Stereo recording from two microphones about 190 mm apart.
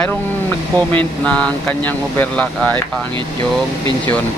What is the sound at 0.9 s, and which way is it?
Speech, 5° left (ahead or behind).